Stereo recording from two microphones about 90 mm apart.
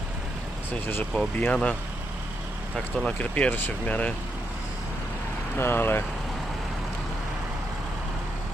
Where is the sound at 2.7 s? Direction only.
5° left (ahead or behind).